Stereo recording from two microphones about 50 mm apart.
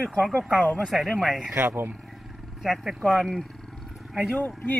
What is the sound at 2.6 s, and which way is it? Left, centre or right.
Speech, centre.